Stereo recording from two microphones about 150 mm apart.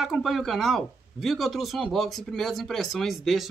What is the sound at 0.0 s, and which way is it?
Speech, centre (ahead or behind).